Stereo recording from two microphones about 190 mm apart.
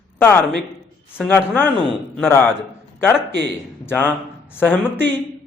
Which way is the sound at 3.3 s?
65° right (ahead or behind).